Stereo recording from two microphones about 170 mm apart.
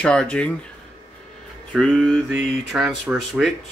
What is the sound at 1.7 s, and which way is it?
Speech, 5° left (ahead or behind).